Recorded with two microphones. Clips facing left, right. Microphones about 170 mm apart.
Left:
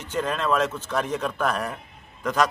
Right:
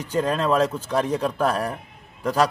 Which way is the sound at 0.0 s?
35° right (ahead or behind).